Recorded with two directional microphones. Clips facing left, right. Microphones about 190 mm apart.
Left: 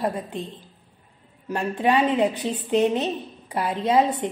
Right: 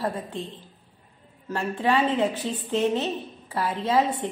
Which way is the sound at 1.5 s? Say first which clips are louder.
Left 2 dB; 15° left (ahead or behind).